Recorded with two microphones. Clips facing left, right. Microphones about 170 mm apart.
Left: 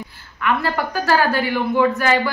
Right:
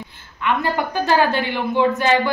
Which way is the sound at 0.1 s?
20° right (ahead or behind).